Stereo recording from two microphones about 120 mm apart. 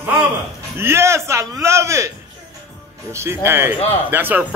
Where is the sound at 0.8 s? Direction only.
20° right (ahead or behind).